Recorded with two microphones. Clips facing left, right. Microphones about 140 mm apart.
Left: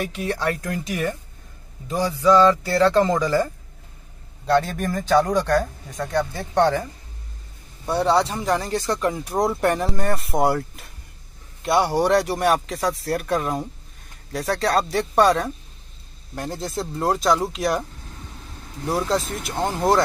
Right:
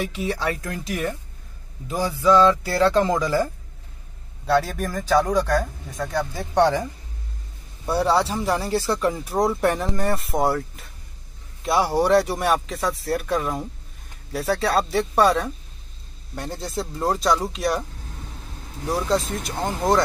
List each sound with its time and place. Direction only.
0.0 s speech: centre (ahead or behind)
4.5 s speech: 5° right (ahead or behind)
6.5 s speech: 15° right (ahead or behind)
7.8 s speech: 5° right (ahead or behind)
18.9 s speech: centre (ahead or behind)